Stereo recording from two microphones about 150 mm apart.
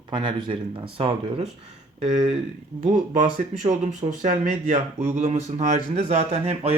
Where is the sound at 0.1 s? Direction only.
30° right (ahead or behind).